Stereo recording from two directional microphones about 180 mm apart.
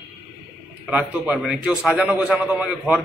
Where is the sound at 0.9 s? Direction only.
5° right (ahead or behind).